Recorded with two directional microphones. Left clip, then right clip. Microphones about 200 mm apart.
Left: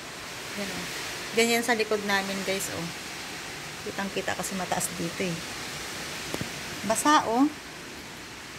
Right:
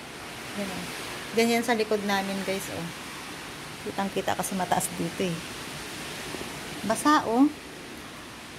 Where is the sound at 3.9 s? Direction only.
20° right (ahead or behind).